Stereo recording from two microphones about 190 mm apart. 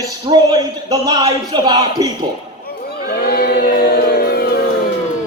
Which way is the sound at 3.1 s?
55° left (ahead or behind).